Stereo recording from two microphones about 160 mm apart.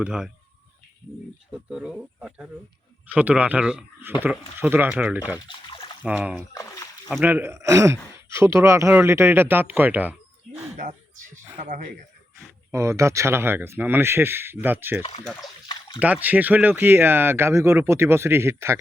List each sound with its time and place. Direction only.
0.0 s speech: 5° right (ahead or behind)
1.5 s speech: 5° right (ahead or behind)
5.5 s a sound: 30° left (ahead or behind)
6.0 s speech: 10° right (ahead or behind)
6.5 s speech: 20° left (ahead or behind)
7.1 s speech: 10° right (ahead or behind)
10.8 s a sound: 55° right (ahead or behind)
12.7 s speech: 20° right (ahead or behind)
15.4 s a sound: 25° left (ahead or behind)
16.0 s speech: 10° right (ahead or behind)